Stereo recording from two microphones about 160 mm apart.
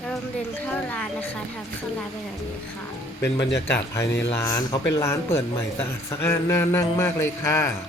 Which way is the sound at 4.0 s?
90° left.